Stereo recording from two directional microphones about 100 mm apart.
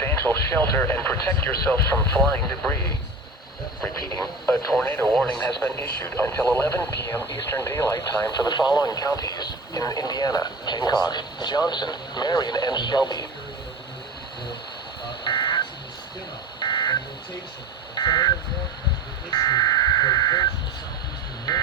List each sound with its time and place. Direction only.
0.0 s speech: 20° left (ahead or behind)
4.8 s speech: 20° left (ahead or behind)
5.0 s speech: 10° left (ahead or behind); by 8.4 s 35° left (ahead or behind)
8.4 s speech: 45° left (ahead or behind)
15.2 s a sound: 55° left (ahead or behind)
16.6 s telephone dialing: 55° left (ahead or behind)
19.3 s buzzer: 45° left (ahead or behind)